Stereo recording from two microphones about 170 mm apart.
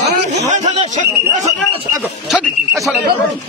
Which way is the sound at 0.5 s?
45° right (ahead or behind).